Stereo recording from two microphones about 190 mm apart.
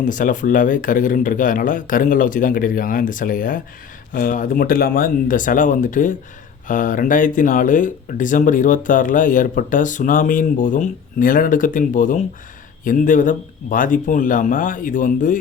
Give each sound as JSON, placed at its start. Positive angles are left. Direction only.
{"t": 0.0, "sound": "speech", "side_deg": 45}